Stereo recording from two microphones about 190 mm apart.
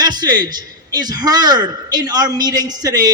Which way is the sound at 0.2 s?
20° right (ahead or behind).